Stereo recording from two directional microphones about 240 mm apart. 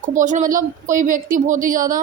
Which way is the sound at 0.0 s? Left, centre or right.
Right.